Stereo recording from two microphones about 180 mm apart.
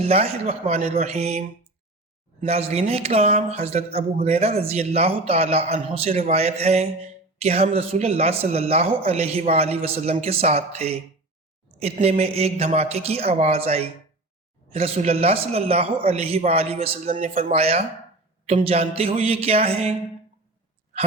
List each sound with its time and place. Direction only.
0.0 s speech: 35° right (ahead or behind)